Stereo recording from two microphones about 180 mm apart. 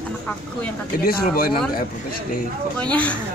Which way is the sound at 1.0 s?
55° left (ahead or behind).